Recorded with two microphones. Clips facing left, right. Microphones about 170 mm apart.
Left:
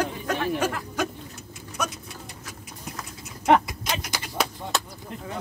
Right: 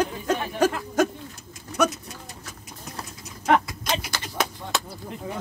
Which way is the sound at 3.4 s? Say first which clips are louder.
Left 2 dB; 20° left (ahead or behind).